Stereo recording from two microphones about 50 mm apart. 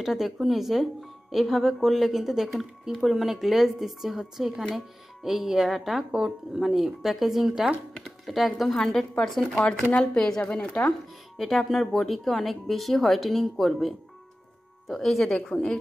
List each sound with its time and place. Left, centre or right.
0.0 s a woman's voice: centre
6.1 s speech: centre
6.6 s a woman's voice: centre
9.5 s speech: centre
10.5 s speech: left
11.3 s a woman's voice: centre
15.5 s a woman's voice: left